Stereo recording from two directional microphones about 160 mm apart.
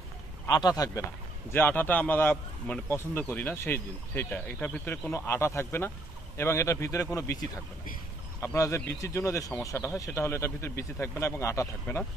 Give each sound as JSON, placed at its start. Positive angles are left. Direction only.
{"t": 0.5, "sound": "speech", "side_deg": 25}
{"t": 1.5, "sound": "speech", "side_deg": 10}